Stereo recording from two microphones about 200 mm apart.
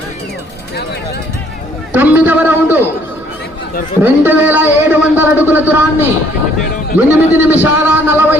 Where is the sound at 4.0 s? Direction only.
10° right (ahead or behind).